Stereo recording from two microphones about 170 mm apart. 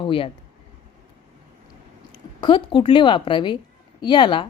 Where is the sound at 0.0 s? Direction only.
30° left (ahead or behind).